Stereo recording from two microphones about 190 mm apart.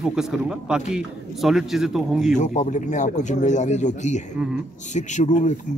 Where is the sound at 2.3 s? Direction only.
40° left (ahead or behind).